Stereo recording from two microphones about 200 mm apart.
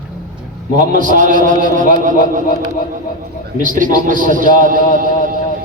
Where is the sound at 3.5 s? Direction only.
40° right (ahead or behind).